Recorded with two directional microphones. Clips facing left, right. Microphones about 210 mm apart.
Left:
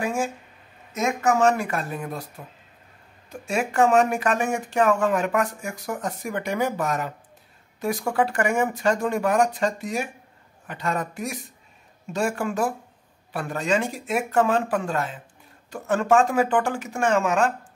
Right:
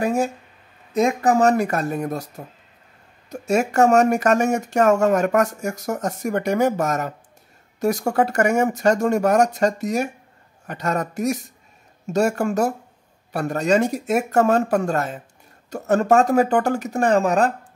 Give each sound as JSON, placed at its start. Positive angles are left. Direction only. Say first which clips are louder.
{"t": 0.0, "sound": "speech", "louder": "right 5 dB", "side_deg": -40}